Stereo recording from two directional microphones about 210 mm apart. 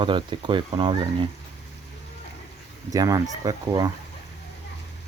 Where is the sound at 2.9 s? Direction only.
15° right (ahead or behind).